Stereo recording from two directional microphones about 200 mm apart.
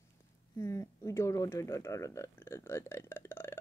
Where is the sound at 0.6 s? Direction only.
15° left (ahead or behind).